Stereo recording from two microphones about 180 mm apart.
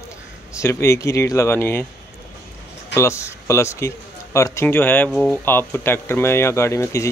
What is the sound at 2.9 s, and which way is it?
Speech, 15° left (ahead or behind).